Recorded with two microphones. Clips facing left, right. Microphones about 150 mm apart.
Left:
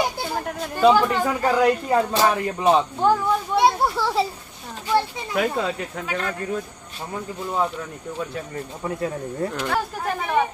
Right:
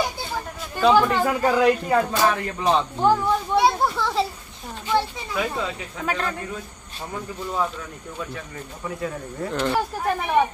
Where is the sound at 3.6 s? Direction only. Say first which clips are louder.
Left 2 dB; 5° left (ahead or behind).